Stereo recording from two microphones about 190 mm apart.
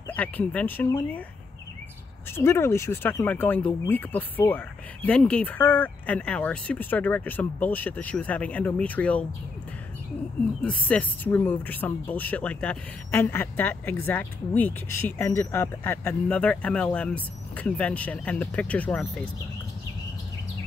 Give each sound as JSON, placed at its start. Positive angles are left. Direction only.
{"t": 0.1, "sound": "speech", "side_deg": 10}
{"t": 2.3, "sound": "speech", "side_deg": 15}
{"t": 10.6, "sound": "speech", "side_deg": 5}